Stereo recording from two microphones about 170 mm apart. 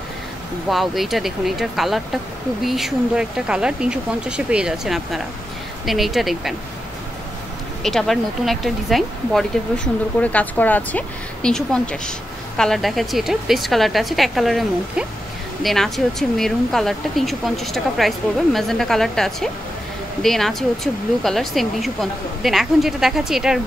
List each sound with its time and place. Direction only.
0.7 s speech: centre (ahead or behind)
7.8 s speech: centre (ahead or behind)